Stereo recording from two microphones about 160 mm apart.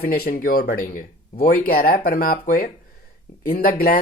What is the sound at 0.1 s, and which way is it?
Speech, 70° left (ahead or behind).